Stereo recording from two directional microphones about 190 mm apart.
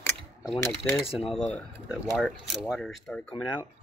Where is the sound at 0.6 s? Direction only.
15° left (ahead or behind).